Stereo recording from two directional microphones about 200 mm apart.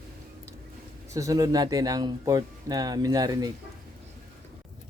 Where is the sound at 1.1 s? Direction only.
15° right (ahead or behind).